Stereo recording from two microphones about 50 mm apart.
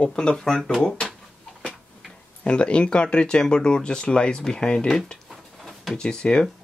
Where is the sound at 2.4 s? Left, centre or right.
Left.